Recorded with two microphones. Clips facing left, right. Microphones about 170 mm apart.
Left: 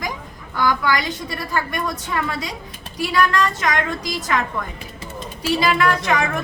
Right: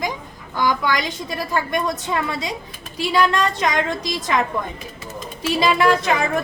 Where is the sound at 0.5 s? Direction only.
20° right (ahead or behind).